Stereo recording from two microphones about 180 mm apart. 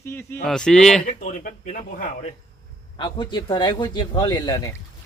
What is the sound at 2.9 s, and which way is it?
Speech, 25° left (ahead or behind).